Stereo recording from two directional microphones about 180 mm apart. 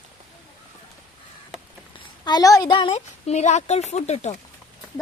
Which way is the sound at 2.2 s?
20° left (ahead or behind).